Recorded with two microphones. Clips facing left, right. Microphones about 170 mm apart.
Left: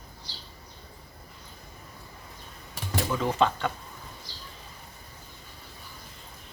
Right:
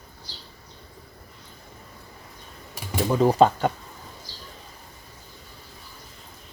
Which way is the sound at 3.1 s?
40° right (ahead or behind).